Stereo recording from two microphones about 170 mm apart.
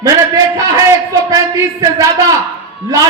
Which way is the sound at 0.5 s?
20° right (ahead or behind).